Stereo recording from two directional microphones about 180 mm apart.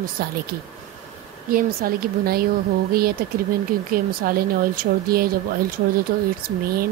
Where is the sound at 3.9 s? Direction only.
55° right (ahead or behind).